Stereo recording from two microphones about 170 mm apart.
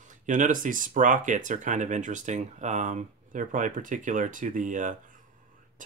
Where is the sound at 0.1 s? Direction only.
50° right (ahead or behind).